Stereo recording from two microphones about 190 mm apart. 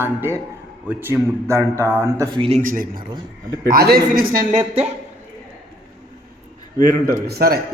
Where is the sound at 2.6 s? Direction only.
45° right (ahead or behind).